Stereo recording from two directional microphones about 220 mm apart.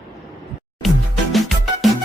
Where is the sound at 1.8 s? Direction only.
Centre (ahead or behind).